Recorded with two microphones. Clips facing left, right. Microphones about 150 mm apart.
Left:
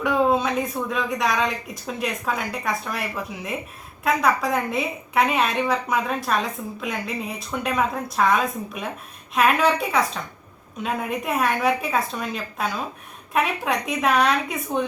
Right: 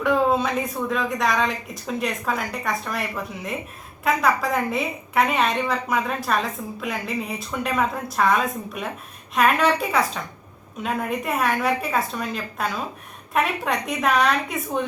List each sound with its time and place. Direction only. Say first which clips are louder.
0.0 s a woman's voice: even; centre (ahead or behind)
4.0 s a woman's voice: even; centre (ahead or behind)